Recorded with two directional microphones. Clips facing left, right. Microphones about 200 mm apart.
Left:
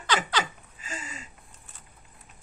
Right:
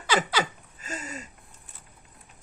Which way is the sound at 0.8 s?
40° right (ahead or behind).